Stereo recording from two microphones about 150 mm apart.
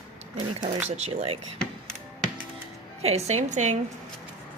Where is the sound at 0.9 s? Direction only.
45° right (ahead or behind).